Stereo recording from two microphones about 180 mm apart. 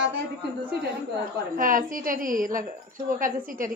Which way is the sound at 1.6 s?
50° right (ahead or behind).